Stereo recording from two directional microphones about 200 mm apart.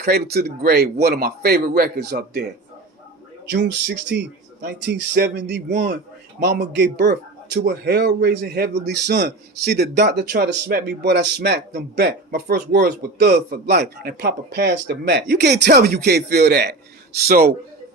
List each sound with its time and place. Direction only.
0.0 s a man's voice: 50° right (ahead or behind)
3.5 s a man's voice: 60° right (ahead or behind)